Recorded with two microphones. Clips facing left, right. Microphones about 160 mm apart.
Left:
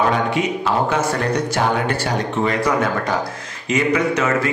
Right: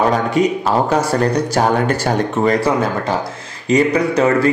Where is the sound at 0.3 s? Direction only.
35° right (ahead or behind).